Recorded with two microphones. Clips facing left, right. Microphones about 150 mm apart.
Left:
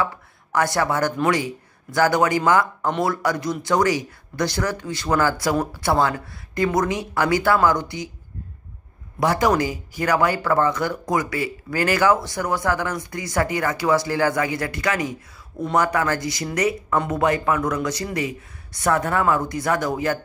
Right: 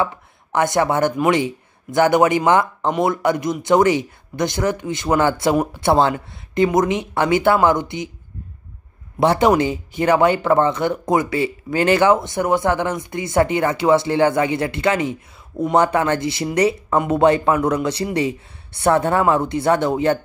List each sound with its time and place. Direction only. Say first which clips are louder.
0.0 s speech: right 3 dB; 25° right (ahead or behind)
9.2 s speech: right 4 dB; 25° right (ahead or behind)